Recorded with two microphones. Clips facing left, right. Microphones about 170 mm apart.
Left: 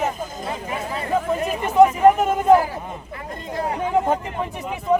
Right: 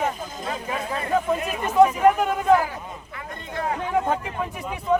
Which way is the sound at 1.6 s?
20° left (ahead or behind).